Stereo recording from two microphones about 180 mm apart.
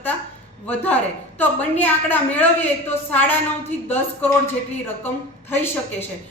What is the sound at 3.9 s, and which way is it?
Speech, 10° left (ahead or behind).